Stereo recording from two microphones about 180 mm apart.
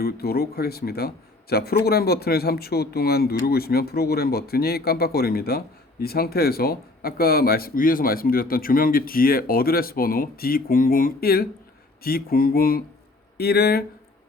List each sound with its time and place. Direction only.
0.0 s speech: 60° left (ahead or behind)